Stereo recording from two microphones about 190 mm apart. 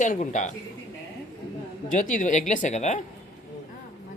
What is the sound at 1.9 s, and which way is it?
Speech, 40° left (ahead or behind).